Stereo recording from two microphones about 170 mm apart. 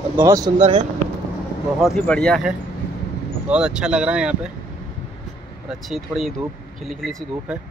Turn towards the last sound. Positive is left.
turn(degrees=0)  # may be behind; listen again after turning